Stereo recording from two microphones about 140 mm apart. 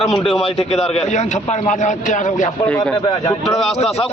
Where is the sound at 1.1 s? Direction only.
60° left (ahead or behind).